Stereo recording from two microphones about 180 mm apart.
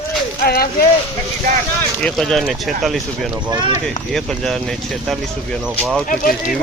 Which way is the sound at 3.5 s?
25° right (ahead or behind).